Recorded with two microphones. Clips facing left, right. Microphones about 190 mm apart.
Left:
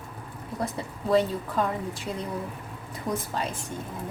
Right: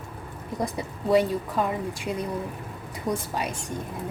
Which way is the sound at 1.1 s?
10° right (ahead or behind).